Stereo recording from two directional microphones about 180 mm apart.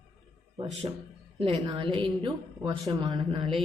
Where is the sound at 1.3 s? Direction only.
35° right (ahead or behind).